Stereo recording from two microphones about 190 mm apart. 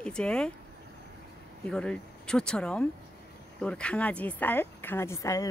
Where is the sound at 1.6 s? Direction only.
5° left (ahead or behind).